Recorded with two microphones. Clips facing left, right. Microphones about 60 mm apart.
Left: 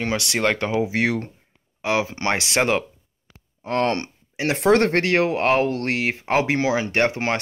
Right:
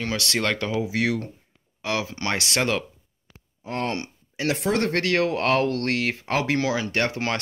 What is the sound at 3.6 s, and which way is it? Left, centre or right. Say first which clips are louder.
Speech: left 6 dB; left.